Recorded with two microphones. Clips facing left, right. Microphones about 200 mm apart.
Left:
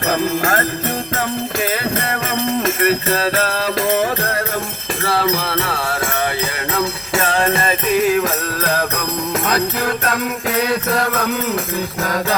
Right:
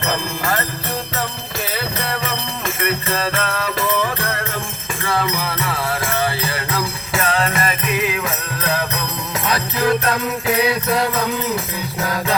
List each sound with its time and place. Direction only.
0.1 s music: 45° left (ahead or behind)
2.6 s music: 40° left (ahead or behind)
6.7 s music: 30° left (ahead or behind)